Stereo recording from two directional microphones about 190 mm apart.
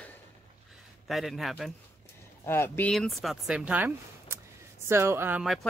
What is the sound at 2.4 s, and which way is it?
Speech, 10° left (ahead or behind).